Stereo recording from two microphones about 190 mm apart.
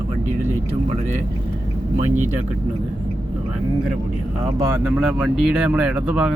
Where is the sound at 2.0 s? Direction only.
40° right (ahead or behind).